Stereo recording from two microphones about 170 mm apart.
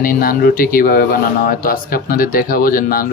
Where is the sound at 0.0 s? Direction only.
55° left (ahead or behind).